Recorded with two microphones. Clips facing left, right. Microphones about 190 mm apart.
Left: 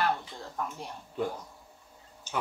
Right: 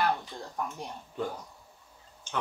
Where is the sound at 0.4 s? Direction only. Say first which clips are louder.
Right 1 dB; 15° right (ahead or behind).